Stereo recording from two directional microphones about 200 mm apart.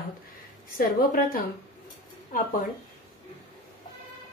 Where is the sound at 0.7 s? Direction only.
45° left (ahead or behind).